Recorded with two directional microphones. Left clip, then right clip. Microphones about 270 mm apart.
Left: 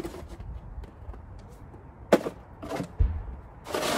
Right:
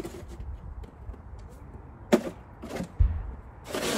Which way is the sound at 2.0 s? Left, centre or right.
Centre.